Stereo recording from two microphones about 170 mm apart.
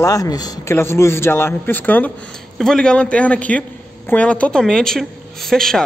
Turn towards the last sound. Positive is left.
turn(degrees=5)  # may be behind; listen again after turning